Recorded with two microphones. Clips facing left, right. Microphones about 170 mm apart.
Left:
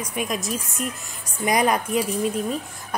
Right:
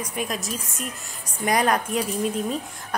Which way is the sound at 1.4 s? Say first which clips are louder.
Left 1 dB; 10° left (ahead or behind).